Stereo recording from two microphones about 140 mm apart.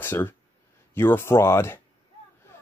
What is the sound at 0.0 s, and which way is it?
A man's voice, 15° left (ahead or behind).